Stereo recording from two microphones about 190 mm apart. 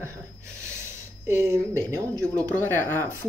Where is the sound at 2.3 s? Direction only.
10° left (ahead or behind).